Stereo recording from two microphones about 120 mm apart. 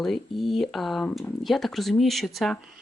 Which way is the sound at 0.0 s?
Centre (ahead or behind).